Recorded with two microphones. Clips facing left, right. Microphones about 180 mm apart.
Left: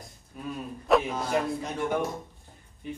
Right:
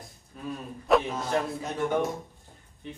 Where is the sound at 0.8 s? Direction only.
Centre (ahead or behind).